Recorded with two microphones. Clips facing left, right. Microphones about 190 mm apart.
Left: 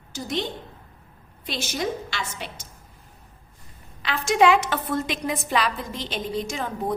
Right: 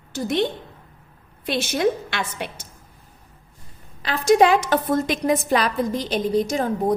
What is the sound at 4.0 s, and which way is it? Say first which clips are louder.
A woman's voice: right 4 dB; 40° right (ahead or behind).